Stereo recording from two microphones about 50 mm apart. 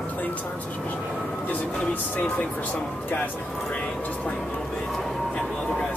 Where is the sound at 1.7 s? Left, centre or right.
Left.